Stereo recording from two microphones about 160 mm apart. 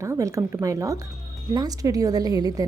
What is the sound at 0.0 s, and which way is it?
A woman's voice, 20° right (ahead or behind).